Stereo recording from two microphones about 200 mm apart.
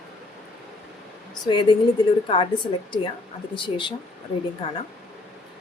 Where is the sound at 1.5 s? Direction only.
25° left (ahead or behind).